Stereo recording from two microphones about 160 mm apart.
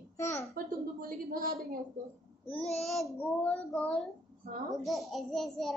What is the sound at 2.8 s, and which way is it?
A child's voice, centre (ahead or behind).